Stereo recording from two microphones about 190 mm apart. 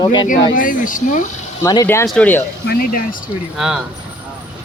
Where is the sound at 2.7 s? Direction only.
50° left (ahead or behind).